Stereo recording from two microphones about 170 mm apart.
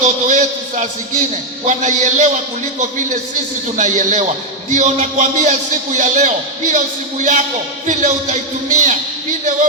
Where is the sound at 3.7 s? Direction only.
50° right (ahead or behind).